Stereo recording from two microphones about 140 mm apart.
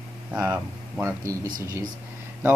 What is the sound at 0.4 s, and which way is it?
Speech, 15° right (ahead or behind).